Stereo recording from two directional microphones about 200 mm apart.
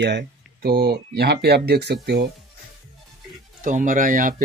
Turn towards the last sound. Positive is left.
turn(degrees=-40)  # may be behind; listen again after turning